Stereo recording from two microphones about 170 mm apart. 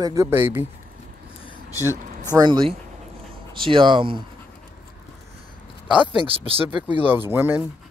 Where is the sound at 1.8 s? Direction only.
15° left (ahead or behind).